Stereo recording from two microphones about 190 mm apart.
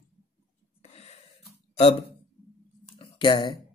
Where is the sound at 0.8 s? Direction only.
35° left (ahead or behind).